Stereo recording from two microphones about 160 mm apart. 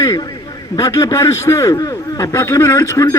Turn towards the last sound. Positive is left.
turn(degrees=20)  # may be behind; listen again after turning